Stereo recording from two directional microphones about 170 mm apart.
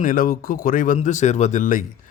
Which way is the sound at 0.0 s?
55° left (ahead or behind).